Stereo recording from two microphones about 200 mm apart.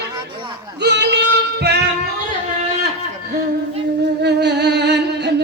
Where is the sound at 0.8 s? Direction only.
60° right (ahead or behind).